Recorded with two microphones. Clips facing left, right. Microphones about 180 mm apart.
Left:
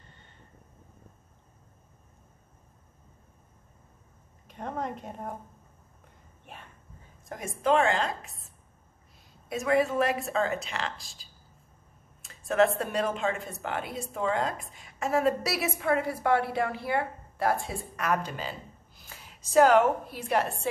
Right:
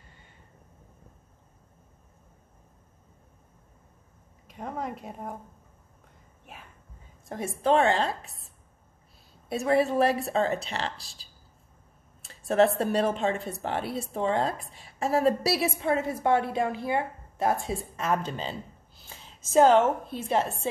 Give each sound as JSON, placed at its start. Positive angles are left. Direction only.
{"t": 4.5, "sound": "a woman's voice", "side_deg": -5}
{"t": 6.4, "sound": "a sound", "side_deg": 0}
{"t": 7.2, "sound": "speech", "side_deg": -35}
{"t": 9.5, "sound": "a woman's voice", "side_deg": -35}